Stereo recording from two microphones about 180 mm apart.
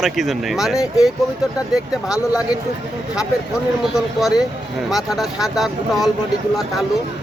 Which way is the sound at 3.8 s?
Centre (ahead or behind).